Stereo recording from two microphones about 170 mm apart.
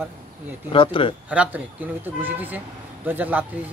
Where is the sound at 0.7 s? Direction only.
30° left (ahead or behind).